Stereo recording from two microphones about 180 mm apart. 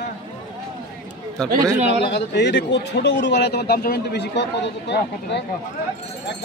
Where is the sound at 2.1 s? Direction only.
75° left (ahead or behind).